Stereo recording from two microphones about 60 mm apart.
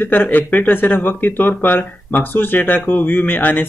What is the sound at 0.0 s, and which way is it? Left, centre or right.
Speech, left.